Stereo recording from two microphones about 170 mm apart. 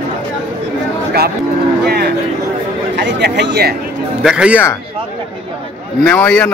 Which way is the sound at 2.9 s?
85° right.